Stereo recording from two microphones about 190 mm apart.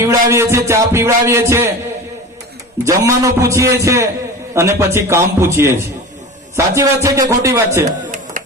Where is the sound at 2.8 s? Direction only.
15° right (ahead or behind).